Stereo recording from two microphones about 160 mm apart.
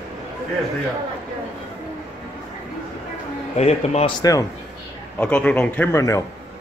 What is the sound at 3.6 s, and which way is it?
Speech, 40° left (ahead or behind).